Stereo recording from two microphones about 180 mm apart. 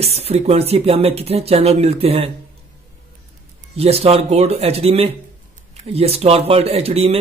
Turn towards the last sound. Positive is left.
turn(degrees=-35)  # may be behind; listen again after turning